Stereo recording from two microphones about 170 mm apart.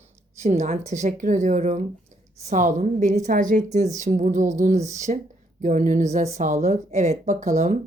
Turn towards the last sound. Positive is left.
turn(degrees=-45)  # may be behind; listen again after turning